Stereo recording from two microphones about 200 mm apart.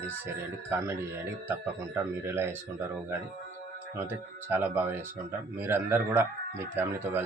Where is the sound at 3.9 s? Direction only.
10° right (ahead or behind).